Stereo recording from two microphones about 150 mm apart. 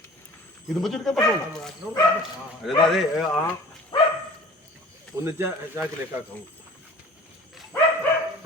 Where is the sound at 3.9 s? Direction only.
30° left (ahead or behind).